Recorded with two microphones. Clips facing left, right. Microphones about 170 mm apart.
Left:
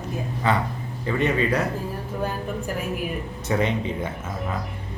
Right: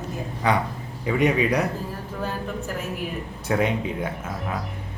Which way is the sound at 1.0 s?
10° right (ahead or behind).